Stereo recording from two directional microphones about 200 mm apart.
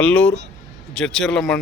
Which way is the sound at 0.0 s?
5° left (ahead or behind).